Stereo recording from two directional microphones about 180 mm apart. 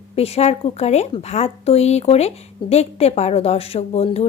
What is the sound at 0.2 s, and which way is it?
Speech, 35° left (ahead or behind).